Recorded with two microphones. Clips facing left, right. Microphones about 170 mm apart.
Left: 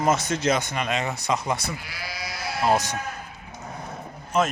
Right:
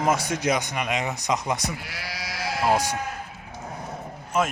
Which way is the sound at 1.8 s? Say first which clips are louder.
Even; 70° right (ahead or behind).